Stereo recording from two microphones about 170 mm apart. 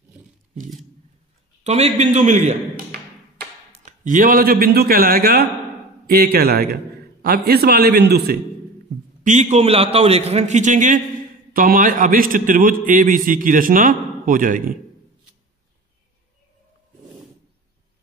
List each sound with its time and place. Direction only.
1.6 s a man's voice: 40° right (ahead or behind)
2.7 s tap: 65° right (ahead or behind)
4.0 s a man's voice: 50° right (ahead or behind); by 8.4 s 70° right (ahead or behind)
9.2 s a man's voice: 45° right (ahead or behind)